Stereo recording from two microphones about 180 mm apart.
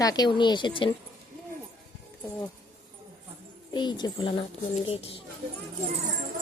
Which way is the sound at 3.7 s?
25° left (ahead or behind).